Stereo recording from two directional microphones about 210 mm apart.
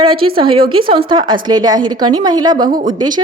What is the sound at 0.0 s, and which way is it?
A woman's voice, 25° right (ahead or behind).